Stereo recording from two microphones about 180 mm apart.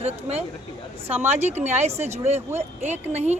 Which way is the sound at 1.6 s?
35° right (ahead or behind).